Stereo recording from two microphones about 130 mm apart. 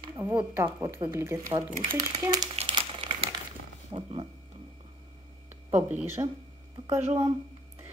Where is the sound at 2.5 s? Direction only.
45° right (ahead or behind).